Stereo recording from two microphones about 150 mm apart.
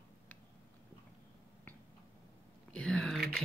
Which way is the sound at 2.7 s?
5° left (ahead or behind).